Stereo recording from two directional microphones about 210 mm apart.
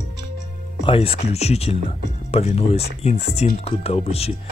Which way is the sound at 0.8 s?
25° left (ahead or behind).